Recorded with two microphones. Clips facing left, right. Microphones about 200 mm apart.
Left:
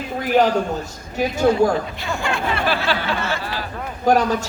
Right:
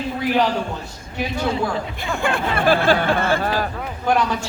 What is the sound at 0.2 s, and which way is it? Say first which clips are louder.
A man's voice: left 4 dB; 45° left (ahead or behind).